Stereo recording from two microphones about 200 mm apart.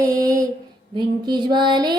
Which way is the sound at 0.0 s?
15° right (ahead or behind).